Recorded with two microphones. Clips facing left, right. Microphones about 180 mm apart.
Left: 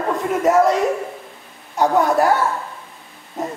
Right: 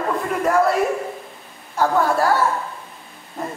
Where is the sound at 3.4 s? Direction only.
20° left (ahead or behind).